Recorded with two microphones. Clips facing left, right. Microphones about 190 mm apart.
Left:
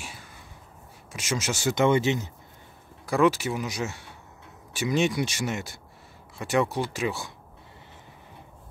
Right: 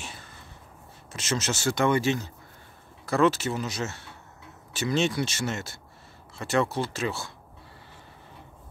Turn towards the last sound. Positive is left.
turn(degrees=15)  # may be behind; listen again after turning